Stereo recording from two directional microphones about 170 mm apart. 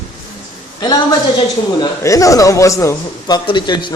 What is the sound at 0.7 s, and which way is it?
A man's voice, 25° left (ahead or behind).